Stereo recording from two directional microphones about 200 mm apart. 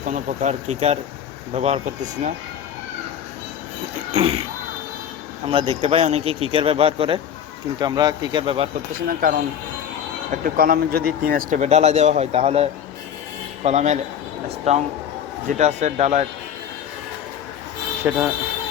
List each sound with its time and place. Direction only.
0.0 s speech: 40° right (ahead or behind)
4.1 s speech: 30° right (ahead or behind)
5.5 s speech: 30° right (ahead or behind)
9.0 s speech: 45° right (ahead or behind)
10.4 s speech: 45° right (ahead or behind); by 12.6 s 30° right (ahead or behind)
13.7 s speech: 35° right (ahead or behind)
18.0 s speech: 10° right (ahead or behind)